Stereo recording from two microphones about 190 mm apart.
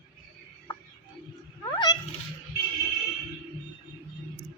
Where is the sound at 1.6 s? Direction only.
20° left (ahead or behind).